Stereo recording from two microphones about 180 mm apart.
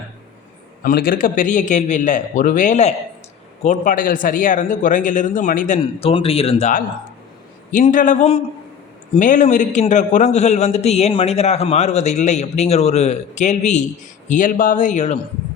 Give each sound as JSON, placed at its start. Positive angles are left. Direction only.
{"t": 0.8, "sound": "a man's voice", "side_deg": 55}
{"t": 5.8, "sound": "a man's voice", "side_deg": 30}